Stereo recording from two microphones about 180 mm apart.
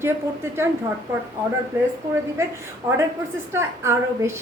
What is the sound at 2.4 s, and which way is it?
A woman's voice, 15° right (ahead or behind).